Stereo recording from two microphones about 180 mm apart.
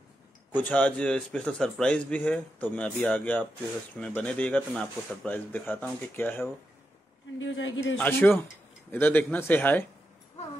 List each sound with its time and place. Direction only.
0.7 s a man's voice: 10° left (ahead or behind)
7.3 s speech: 90° left
8.0 s a man's voice: 10° left (ahead or behind)